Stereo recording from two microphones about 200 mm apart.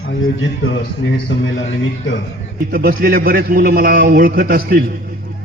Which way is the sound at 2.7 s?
50° right (ahead or behind).